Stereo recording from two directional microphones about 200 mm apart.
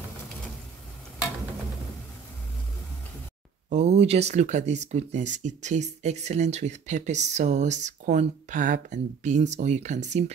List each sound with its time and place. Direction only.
3.7 s speech: 35° right (ahead or behind)